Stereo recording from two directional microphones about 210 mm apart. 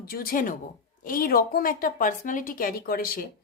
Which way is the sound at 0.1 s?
45° left (ahead or behind).